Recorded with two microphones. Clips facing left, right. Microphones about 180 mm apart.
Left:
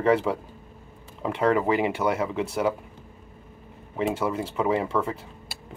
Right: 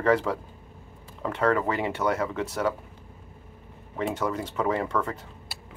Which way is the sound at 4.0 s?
10° left (ahead or behind).